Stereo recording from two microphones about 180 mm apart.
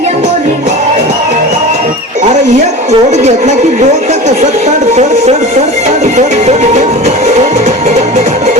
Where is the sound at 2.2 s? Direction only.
40° right (ahead or behind).